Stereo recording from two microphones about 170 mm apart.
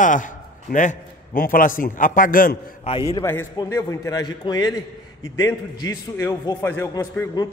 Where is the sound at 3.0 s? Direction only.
15° left (ahead or behind).